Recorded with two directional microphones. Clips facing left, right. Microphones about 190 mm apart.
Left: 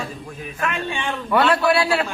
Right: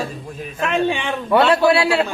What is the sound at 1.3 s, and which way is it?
Speech, 25° right (ahead or behind).